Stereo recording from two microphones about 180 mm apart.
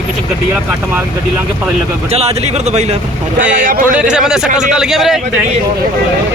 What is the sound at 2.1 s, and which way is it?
Speech, 35° right (ahead or behind).